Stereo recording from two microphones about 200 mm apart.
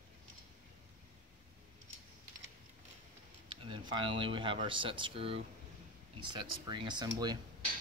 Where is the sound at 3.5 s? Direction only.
25° right (ahead or behind).